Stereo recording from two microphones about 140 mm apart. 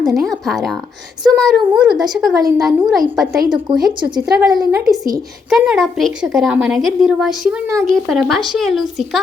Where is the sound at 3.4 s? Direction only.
30° right (ahead or behind).